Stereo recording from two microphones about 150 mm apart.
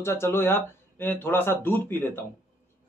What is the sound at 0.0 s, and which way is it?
A man's voice, 15° left (ahead or behind).